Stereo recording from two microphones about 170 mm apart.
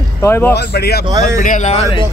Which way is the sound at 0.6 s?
70° left (ahead or behind).